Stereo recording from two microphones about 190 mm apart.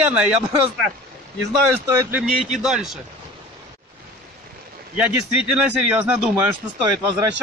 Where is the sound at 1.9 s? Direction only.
10° right (ahead or behind).